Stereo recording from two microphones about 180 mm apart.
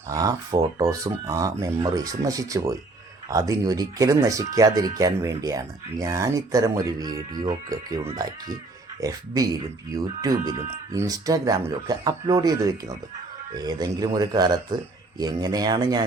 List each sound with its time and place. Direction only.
0.1 s speech: 20° right (ahead or behind)